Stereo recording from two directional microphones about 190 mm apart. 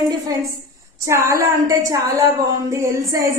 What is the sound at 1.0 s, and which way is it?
A woman's voice, 15° right (ahead or behind).